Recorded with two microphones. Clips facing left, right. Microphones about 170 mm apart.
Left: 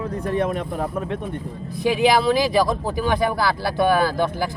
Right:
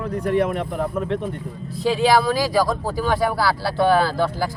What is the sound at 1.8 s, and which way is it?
Speech, 15° left (ahead or behind).